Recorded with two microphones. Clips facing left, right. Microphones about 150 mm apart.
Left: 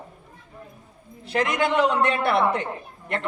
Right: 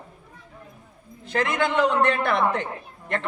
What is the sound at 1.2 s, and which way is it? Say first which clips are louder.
A man's voice: left 1 dB; 10° left (ahead or behind).